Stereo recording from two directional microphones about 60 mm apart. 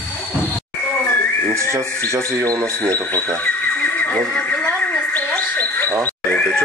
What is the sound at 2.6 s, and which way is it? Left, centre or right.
Speech, centre.